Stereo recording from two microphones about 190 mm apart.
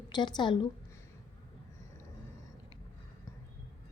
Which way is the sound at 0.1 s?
25° left (ahead or behind).